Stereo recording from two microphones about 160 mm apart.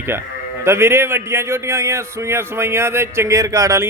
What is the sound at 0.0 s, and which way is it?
Speech, 15° right (ahead or behind).